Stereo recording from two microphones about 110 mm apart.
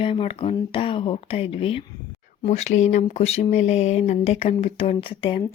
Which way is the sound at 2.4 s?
90° left.